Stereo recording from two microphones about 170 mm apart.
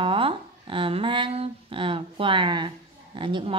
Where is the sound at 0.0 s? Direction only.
30° right (ahead or behind).